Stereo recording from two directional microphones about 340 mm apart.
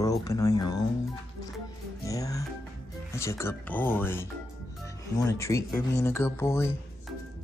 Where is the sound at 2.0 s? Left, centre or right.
Centre.